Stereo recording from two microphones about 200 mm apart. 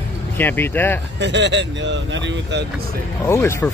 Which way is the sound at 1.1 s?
60° right (ahead or behind).